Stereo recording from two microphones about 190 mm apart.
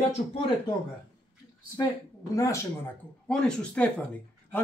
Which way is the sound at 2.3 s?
15° left (ahead or behind).